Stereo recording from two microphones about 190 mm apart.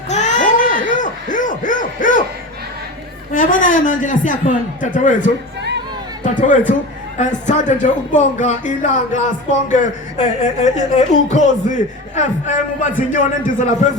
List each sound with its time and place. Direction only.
0.1 s a sound: 40° left (ahead or behind)
3.3 s a man's voice: 45° left (ahead or behind)
6.5 s a man's voice: 40° left (ahead or behind)